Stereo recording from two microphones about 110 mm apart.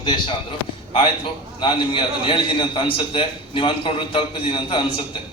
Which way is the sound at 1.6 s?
50° left (ahead or behind).